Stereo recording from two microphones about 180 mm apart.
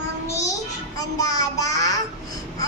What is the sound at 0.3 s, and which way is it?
Child singing, 20° left (ahead or behind).